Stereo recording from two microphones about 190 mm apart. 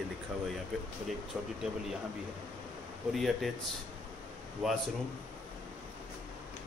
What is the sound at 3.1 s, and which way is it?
Speech, centre (ahead or behind).